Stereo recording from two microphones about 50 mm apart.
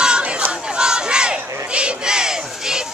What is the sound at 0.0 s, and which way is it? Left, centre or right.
Battle cry, centre.